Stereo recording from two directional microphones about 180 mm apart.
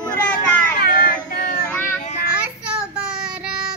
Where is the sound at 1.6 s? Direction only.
10° left (ahead or behind).